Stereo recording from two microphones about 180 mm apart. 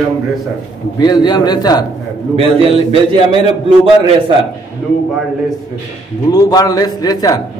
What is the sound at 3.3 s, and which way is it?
A man's voice, 30° right (ahead or behind).